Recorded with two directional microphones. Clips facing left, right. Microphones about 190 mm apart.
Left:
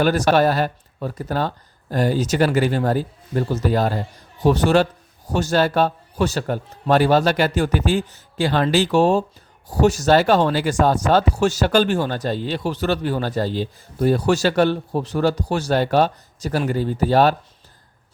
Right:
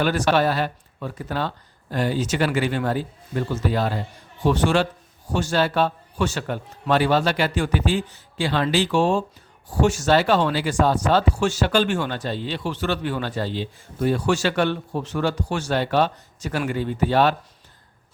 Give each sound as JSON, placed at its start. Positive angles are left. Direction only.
{"t": 0.0, "sound": "speech", "side_deg": 40}